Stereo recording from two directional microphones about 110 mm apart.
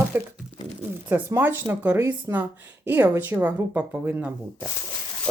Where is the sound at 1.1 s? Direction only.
15° right (ahead or behind).